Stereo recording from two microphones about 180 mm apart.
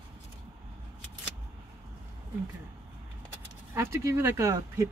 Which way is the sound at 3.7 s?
15° right (ahead or behind).